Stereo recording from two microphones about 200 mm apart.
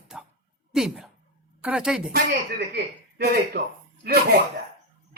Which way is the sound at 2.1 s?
55° right (ahead or behind).